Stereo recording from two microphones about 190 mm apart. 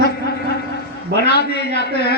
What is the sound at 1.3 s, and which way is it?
Speech, 60° left (ahead or behind).